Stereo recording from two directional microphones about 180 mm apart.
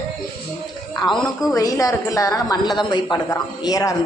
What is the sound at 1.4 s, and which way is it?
Speech, 20° left (ahead or behind).